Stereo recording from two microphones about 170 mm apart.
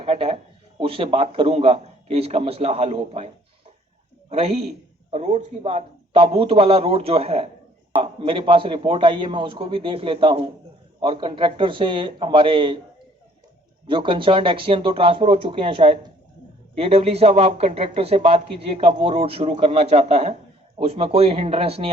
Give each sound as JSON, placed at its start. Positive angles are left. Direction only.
{"t": 0.0, "sound": "a sound", "side_deg": -35}
{"t": 0.8, "sound": "a man's voice", "side_deg": -30}
{"t": 4.3, "sound": "a man's voice", "side_deg": -35}
{"t": 13.8, "sound": "a man's voice", "side_deg": -30}